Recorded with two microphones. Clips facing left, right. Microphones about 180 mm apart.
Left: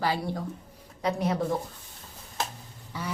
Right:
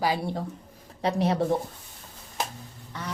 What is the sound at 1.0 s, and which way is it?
Speech, 30° right (ahead or behind).